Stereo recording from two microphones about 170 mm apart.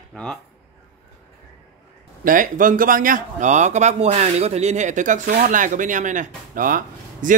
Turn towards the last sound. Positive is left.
turn(degrees=-55)  # may be behind; listen again after turning